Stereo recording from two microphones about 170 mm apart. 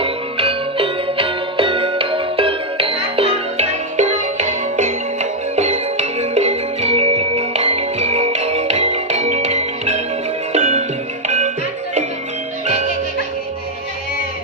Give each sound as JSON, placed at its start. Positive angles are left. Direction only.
{"t": 0.0, "sound": "music", "side_deg": -35}